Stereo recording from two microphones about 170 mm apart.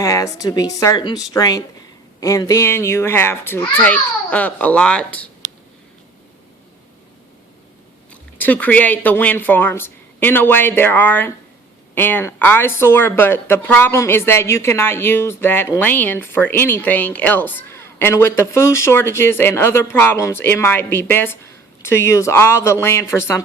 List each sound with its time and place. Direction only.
0.0 s a woman's voice: 20° left (ahead or behind)
8.1 s a woman's voice: 10° left (ahead or behind)